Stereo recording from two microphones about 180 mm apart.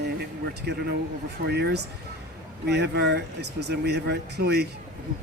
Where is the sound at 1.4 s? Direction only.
65° right (ahead or behind).